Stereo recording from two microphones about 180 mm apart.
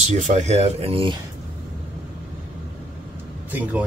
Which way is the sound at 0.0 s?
40° right (ahead or behind).